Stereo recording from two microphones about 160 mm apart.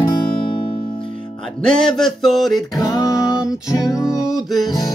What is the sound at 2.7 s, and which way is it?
Music, 25° left (ahead or behind).